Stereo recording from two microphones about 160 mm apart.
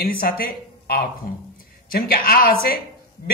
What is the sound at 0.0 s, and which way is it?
A man's voice, 65° left (ahead or behind).